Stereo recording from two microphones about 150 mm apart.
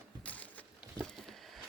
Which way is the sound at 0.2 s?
10° left (ahead or behind).